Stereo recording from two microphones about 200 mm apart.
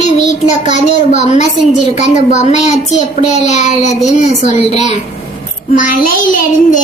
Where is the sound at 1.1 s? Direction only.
35° left (ahead or behind).